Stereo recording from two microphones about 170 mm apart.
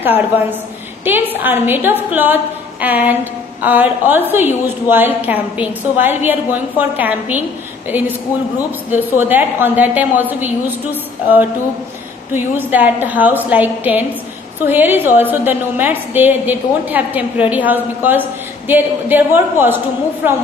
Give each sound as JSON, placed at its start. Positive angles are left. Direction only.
{"t": 0.0, "sound": "a woman's voice", "side_deg": -10}
{"t": 8.9, "sound": "a woman's voice", "side_deg": -10}